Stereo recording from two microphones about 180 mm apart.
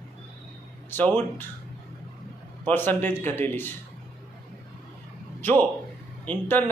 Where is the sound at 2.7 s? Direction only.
10° left (ahead or behind).